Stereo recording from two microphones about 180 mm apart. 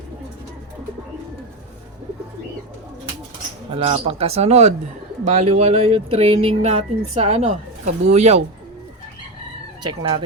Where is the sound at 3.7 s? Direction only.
30° right (ahead or behind).